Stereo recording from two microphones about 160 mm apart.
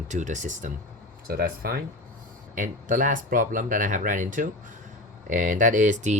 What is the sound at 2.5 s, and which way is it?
Speech, 55° right (ahead or behind).